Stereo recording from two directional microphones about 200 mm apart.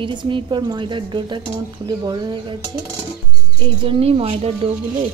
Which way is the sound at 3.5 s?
25° right (ahead or behind).